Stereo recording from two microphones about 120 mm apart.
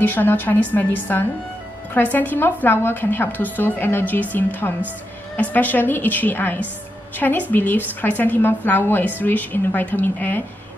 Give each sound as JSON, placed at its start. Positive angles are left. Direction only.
{"t": 0.0, "sound": "a woman's voice", "side_deg": 15}